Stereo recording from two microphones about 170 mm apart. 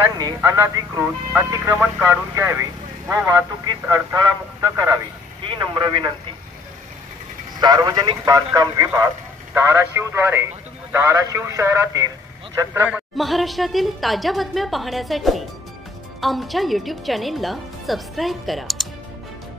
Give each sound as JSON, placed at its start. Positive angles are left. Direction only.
{"t": 0.2, "sound": "speech", "side_deg": -20}
{"t": 7.6, "sound": "a woman's voice", "side_deg": -25}